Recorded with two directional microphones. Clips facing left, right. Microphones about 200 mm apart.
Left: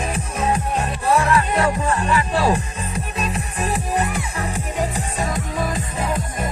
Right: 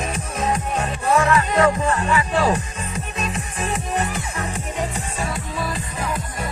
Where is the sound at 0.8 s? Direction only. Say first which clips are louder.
Right 2 dB; 35° left (ahead or behind).